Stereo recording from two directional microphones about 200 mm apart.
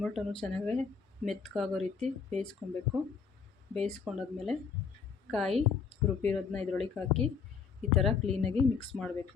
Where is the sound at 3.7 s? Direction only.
5° left (ahead or behind).